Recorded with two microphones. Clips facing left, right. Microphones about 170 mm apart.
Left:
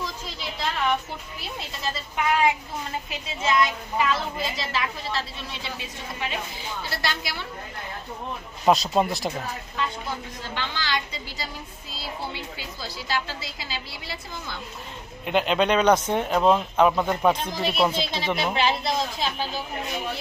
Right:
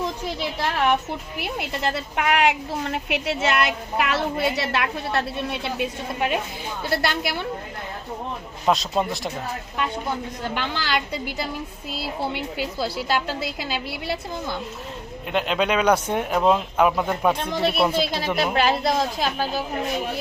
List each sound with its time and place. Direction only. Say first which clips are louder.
0.0 s a woman's voice: right 7 dB; 65° right (ahead or behind)
8.6 s speech: left 1 dB; 5° left (ahead or behind)
10.6 s a woman's voice: right 2 dB; 60° right (ahead or behind)
15.3 s speech: left 1 dB; centre (ahead or behind)
18.5 s a woman's voice: right 4 dB; 45° right (ahead or behind)